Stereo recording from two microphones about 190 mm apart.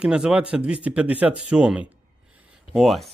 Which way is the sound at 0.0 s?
5° right (ahead or behind).